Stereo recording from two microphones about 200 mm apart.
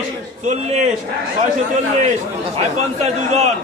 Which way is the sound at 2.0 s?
35° right (ahead or behind).